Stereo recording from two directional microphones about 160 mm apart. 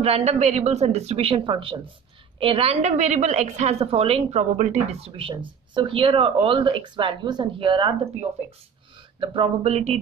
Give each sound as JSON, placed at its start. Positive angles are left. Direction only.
{"t": 0.0, "sound": "a woman's voice", "side_deg": -40}